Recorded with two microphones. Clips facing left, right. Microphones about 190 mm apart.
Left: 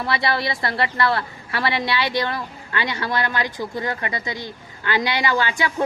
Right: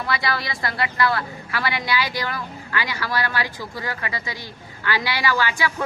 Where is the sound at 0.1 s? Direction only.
25° left (ahead or behind).